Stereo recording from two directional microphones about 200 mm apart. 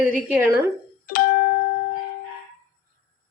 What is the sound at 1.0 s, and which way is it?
Music, 45° left (ahead or behind).